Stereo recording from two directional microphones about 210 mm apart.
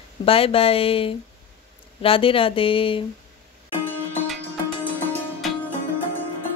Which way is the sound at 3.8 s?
Centre (ahead or behind).